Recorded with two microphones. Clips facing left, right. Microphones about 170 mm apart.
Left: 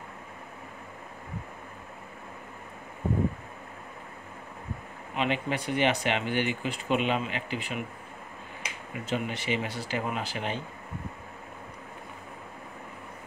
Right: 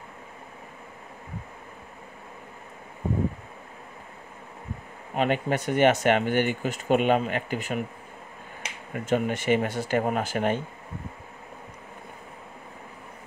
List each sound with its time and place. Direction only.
5.1 s speech: 45° right (ahead or behind)
8.9 s speech: 50° right (ahead or behind)